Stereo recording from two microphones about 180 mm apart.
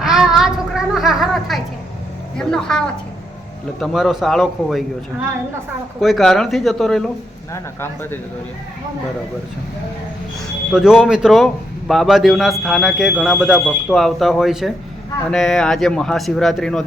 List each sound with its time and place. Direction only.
0.0 s a sound: centre (ahead or behind)
2.4 s a man's voice: 5° left (ahead or behind)
6.0 s a man's voice: centre (ahead or behind)
7.5 s speech: 15° left (ahead or behind)
10.7 s a man's voice: 5° right (ahead or behind)